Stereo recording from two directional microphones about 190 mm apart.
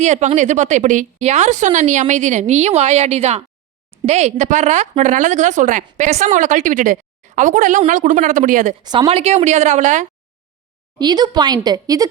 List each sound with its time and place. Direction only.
0.0 s a woman's voice: 40° right (ahead or behind)
8.8 s a woman's voice: 25° right (ahead or behind); by 10.1 s 40° right (ahead or behind)
10.9 s a woman's voice: 20° right (ahead or behind)